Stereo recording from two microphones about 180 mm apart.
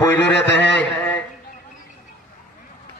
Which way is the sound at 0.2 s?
70° left (ahead or behind).